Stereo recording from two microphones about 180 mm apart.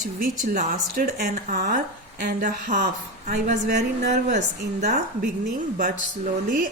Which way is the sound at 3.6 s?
65° right (ahead or behind).